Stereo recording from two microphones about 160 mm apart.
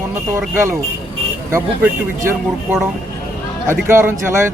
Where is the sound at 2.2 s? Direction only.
15° right (ahead or behind).